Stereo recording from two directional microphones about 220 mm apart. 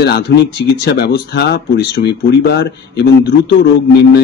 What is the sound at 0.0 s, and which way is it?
A man's voice, 50° left (ahead or behind).